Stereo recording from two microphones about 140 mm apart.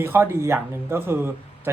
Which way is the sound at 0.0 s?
15° right (ahead or behind).